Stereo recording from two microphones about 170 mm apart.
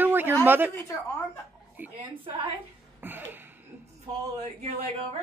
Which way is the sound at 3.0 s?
10° right (ahead or behind).